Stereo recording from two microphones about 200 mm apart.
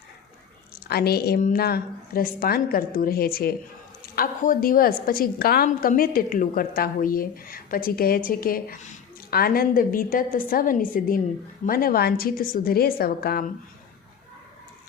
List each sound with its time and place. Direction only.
0.9 s a woman's voice: 50° left (ahead or behind)